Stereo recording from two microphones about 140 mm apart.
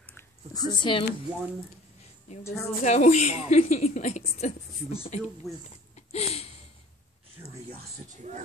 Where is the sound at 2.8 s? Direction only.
55° left (ahead or behind).